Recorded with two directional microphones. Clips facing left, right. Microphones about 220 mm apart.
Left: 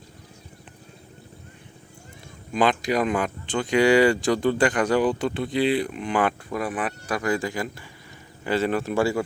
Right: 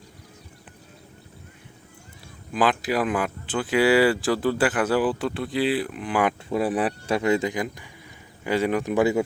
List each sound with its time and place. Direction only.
2.5 s speech: 5° right (ahead or behind)
6.5 s a man's voice: 30° right (ahead or behind)